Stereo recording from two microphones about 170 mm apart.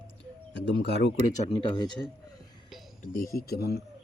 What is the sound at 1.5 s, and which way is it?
Speech, 30° left (ahead or behind).